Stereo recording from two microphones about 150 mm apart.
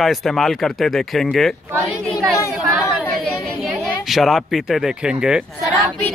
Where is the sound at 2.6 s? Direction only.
5° right (ahead or behind).